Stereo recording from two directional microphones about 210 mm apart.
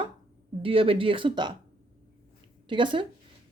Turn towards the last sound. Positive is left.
turn(degrees=-25)  # may be behind; listen again after turning